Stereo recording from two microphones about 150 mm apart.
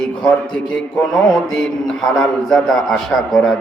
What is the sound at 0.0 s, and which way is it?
A man's voice, 5° left (ahead or behind).